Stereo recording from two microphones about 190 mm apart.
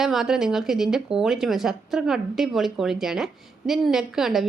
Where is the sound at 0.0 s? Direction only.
Centre (ahead or behind).